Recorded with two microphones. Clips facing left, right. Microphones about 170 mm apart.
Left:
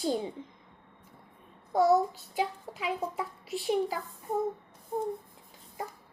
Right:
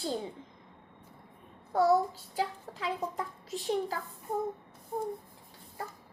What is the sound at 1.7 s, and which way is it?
A child's voice, 15° left (ahead or behind).